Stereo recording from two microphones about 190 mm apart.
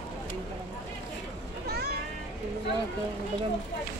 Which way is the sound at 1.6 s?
55° right (ahead or behind).